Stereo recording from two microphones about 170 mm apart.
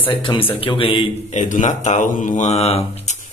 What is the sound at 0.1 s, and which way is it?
Speech, 30° left (ahead or behind).